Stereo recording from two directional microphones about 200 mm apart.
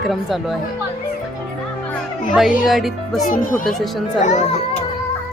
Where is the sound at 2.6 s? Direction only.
Centre (ahead or behind).